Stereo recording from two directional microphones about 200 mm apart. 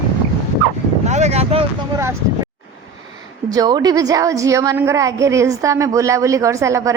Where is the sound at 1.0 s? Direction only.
35° right (ahead or behind).